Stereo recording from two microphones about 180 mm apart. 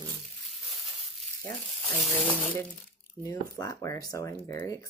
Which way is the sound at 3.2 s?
20° left (ahead or behind).